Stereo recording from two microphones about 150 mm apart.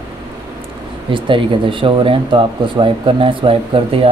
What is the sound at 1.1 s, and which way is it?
Speech, 35° right (ahead or behind).